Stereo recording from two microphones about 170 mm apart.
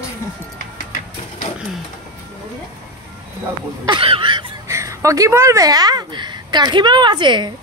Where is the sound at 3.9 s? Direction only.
30° right (ahead or behind).